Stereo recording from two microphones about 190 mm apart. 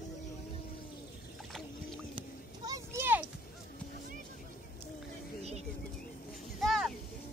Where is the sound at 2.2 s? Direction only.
20° right (ahead or behind).